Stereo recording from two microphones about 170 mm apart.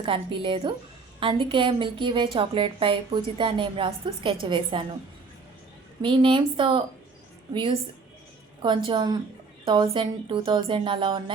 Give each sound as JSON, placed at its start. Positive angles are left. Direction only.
{"t": 0.0, "sound": "a woman's voice", "side_deg": -30}
{"t": 6.0, "sound": "a woman's voice", "side_deg": -30}
{"t": 8.6, "sound": "a woman's voice", "side_deg": -25}